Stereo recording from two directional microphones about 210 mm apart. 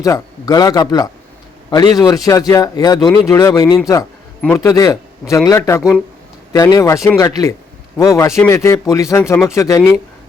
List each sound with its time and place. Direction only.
0.0 s a man's voice: 15° left (ahead or behind)